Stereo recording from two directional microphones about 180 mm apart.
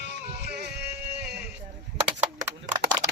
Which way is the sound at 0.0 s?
65° right (ahead or behind).